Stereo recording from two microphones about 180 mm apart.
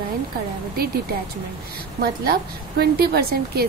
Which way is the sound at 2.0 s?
60° right (ahead or behind).